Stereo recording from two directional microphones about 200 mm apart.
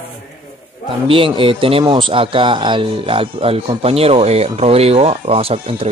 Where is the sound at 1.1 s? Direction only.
25° right (ahead or behind).